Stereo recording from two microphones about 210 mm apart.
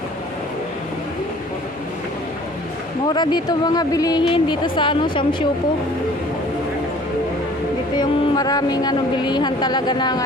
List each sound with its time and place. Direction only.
3.1 s speech: 20° left (ahead or behind)
7.9 s speech: 20° left (ahead or behind)